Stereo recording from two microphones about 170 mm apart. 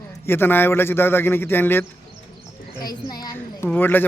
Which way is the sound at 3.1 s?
25° left (ahead or behind).